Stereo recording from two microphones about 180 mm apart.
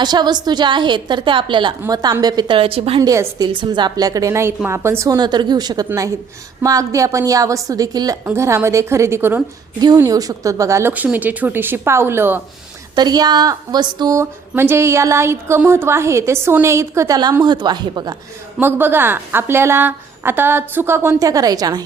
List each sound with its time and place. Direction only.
0.0 s a woman's voice: 25° right (ahead or behind)
3.1 s a woman's voice: 20° right (ahead or behind)
13.0 s speech: 20° right (ahead or behind)
18.6 s speech: 10° right (ahead or behind)